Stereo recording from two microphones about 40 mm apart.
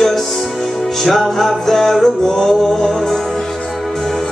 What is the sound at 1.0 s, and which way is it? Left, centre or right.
Music, centre.